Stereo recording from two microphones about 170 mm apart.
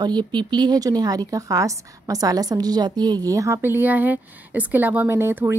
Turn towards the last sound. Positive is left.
turn(degrees=-15)  # may be behind; listen again after turning